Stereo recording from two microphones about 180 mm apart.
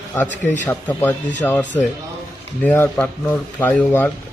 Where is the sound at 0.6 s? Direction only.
10° left (ahead or behind).